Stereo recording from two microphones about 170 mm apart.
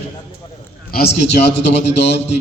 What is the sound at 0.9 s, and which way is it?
A man's voice, 75° left (ahead or behind).